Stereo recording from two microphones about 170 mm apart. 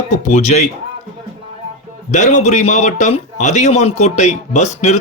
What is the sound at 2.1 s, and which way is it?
A man's voice, 45° left (ahead or behind).